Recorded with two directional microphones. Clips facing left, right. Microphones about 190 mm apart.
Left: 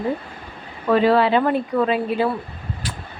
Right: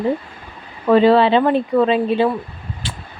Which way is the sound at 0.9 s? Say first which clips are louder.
Right 4 dB; 25° right (ahead or behind).